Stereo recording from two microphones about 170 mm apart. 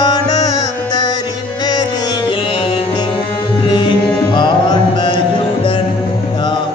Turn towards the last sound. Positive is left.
turn(degrees=25)  # may be behind; listen again after turning